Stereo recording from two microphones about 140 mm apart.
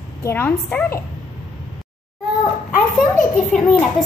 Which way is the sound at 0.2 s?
15° left (ahead or behind).